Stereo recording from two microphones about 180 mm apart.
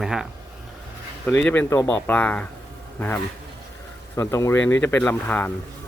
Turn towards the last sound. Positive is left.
turn(degrees=10)  # may be behind; listen again after turning